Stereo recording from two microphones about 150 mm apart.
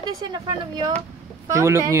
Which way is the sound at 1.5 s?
20° right (ahead or behind).